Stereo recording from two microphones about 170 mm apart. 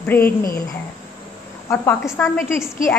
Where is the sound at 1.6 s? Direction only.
15° left (ahead or behind).